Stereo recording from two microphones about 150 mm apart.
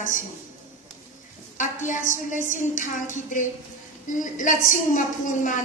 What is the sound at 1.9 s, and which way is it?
A woman's voice, 60° left (ahead or behind).